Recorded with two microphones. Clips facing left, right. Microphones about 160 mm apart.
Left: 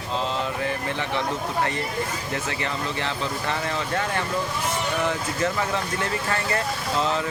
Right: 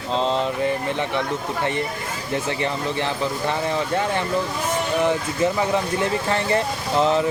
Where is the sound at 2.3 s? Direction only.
20° right (ahead or behind).